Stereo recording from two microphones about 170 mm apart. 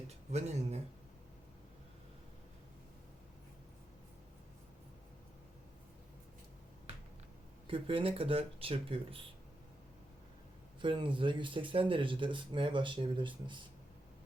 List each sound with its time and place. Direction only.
0.3 s speech: 40° right (ahead or behind)
7.7 s speech: 30° right (ahead or behind)
10.8 s speech: 30° right (ahead or behind)